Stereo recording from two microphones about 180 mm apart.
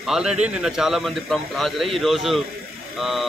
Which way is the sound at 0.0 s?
5° right (ahead or behind).